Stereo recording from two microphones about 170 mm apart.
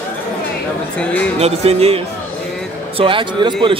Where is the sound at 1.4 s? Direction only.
35° right (ahead or behind).